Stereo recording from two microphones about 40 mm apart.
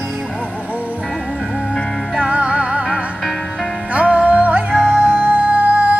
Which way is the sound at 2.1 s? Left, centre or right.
Right.